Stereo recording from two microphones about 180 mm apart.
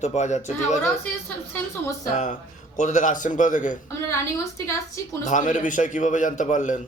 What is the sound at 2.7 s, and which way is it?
A man's voice, 45° left (ahead or behind).